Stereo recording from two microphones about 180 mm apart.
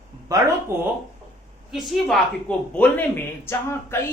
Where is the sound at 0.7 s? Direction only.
15° right (ahead or behind).